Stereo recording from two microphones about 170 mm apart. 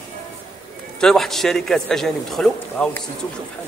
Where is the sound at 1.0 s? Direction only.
Centre (ahead or behind).